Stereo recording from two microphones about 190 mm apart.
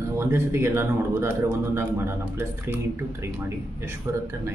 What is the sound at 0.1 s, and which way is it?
A man's voice, 15° right (ahead or behind).